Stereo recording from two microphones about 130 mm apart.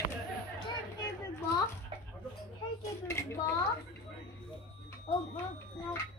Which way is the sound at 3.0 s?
20° left (ahead or behind).